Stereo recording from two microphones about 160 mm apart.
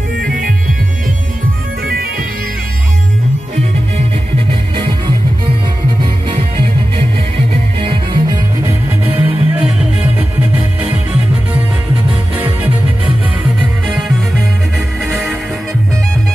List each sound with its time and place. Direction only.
0.2 s music: 60° right (ahead or behind)
1.9 s bagpipes: 70° right (ahead or behind)
7.8 s music: 30° right (ahead or behind)
8.6 s music: 10° right (ahead or behind)